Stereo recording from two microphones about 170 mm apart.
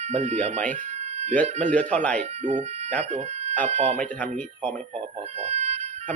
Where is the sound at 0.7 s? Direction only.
45° right (ahead or behind).